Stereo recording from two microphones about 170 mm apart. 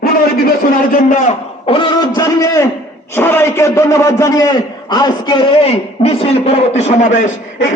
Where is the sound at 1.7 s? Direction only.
25° left (ahead or behind).